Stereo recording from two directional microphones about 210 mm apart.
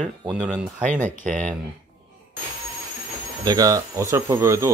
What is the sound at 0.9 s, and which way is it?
Speech, 35° right (ahead or behind).